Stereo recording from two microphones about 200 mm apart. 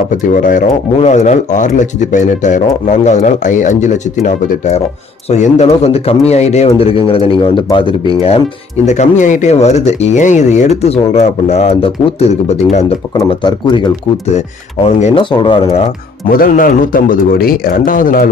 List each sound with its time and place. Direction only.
0.4 s speech: 40° left (ahead or behind)
13.1 s speech: 25° left (ahead or behind)
15.0 s speech: 30° left (ahead or behind)
16.3 s a man's voice: 45° left (ahead or behind)